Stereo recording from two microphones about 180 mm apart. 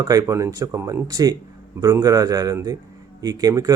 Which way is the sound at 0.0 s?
20° right (ahead or behind).